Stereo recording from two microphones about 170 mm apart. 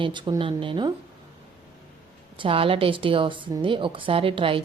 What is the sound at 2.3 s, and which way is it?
Speech, 30° right (ahead or behind).